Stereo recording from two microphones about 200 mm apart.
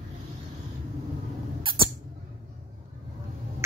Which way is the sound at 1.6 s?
25° right (ahead or behind).